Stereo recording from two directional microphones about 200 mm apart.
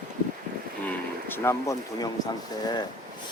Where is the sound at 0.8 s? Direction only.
10° left (ahead or behind).